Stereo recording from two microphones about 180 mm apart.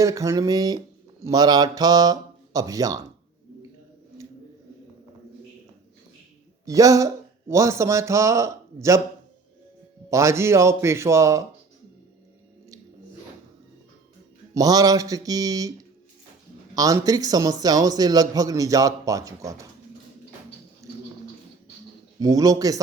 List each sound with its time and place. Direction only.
0.0 s a man's voice: 20° right (ahead or behind)
6.7 s speech: 20° right (ahead or behind)
10.1 s speech: 15° right (ahead or behind)
14.5 s a man's voice: 20° right (ahead or behind)
16.7 s a man's voice: 20° right (ahead or behind)
20.8 s a sound: 15° right (ahead or behind)
22.2 s a man's voice: 20° right (ahead or behind)